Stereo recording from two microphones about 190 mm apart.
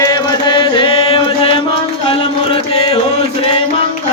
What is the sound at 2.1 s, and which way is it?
Music, 30° left (ahead or behind).